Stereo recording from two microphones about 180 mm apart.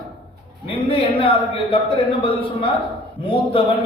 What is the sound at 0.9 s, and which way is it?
A man's voice, 30° left (ahead or behind).